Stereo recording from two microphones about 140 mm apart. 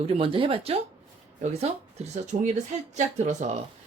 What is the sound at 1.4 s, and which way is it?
Speech, 50° right (ahead or behind).